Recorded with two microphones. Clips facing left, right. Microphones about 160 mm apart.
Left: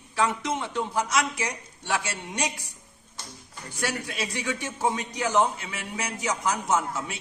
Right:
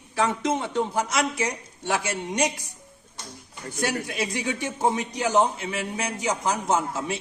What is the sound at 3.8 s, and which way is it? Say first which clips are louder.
Speech: right 3 dB; 20° right (ahead or behind).